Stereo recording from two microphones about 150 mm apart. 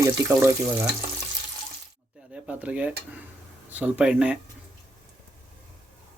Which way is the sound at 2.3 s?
10° right (ahead or behind).